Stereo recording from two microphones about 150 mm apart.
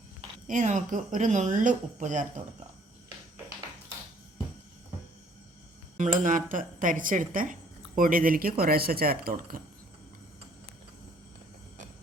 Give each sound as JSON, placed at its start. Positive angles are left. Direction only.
{"t": 0.4, "sound": "speech", "side_deg": -55}
{"t": 6.0, "sound": "speech", "side_deg": -60}